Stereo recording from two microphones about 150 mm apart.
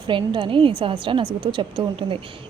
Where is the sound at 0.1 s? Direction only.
35° right (ahead or behind).